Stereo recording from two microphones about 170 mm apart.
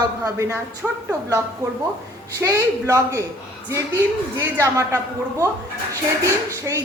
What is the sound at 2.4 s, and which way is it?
Speech, 20° right (ahead or behind).